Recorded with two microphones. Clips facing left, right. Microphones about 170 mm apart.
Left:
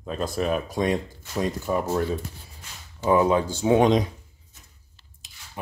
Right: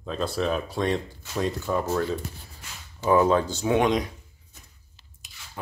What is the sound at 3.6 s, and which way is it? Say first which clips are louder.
Speech: left 4 dB; 35° left (ahead or behind).